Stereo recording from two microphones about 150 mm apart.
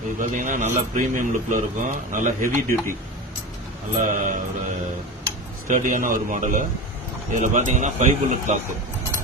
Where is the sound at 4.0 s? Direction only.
60° right (ahead or behind).